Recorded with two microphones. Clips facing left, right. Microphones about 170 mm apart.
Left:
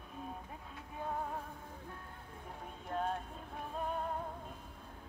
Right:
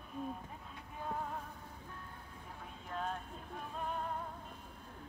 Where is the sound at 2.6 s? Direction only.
45° left (ahead or behind).